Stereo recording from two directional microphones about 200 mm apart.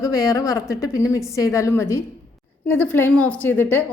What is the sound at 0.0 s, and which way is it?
A woman's voice, 15° left (ahead or behind).